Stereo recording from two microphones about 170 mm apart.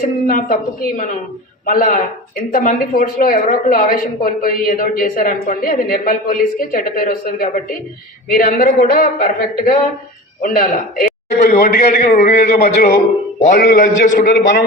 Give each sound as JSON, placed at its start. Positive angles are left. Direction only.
{"t": 0.3, "sound": "a woman's voice", "side_deg": 55}
{"t": 13.6, "sound": "a man's voice", "side_deg": 65}